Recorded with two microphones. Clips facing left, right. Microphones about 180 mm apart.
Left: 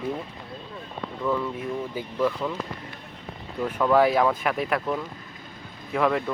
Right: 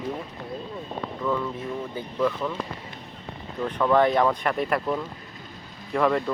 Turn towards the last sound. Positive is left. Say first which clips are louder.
# right 1 dB
turn(degrees=0)  # may be behind; listen again after turning